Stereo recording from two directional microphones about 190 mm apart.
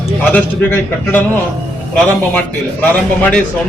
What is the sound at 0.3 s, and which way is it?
Speech, 10° left (ahead or behind).